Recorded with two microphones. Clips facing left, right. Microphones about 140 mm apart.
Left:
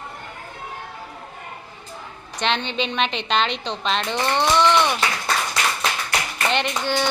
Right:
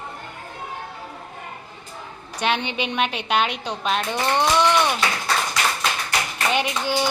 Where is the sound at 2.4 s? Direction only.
10° right (ahead or behind).